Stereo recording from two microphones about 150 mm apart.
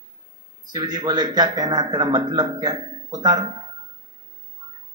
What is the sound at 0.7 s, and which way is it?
A man's voice, 30° right (ahead or behind).